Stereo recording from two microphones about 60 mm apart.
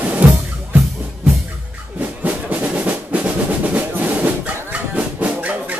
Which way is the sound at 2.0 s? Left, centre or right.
Right.